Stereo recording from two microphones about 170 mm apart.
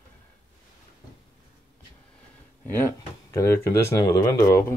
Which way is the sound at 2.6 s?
15° left (ahead or behind).